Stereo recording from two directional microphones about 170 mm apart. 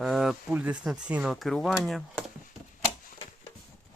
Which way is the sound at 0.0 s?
5° right (ahead or behind).